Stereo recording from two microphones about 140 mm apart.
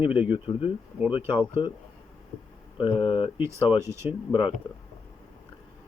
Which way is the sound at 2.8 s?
40° left (ahead or behind).